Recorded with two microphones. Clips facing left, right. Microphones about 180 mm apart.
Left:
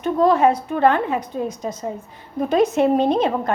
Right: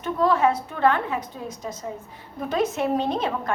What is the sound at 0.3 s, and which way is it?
A woman's voice, 20° left (ahead or behind).